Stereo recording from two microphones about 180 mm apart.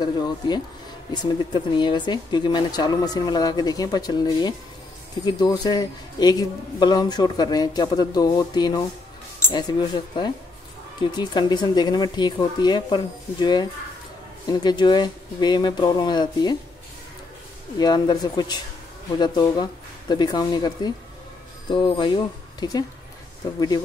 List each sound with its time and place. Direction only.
0.0 s speech: 25° left (ahead or behind)
17.7 s speech: 25° left (ahead or behind)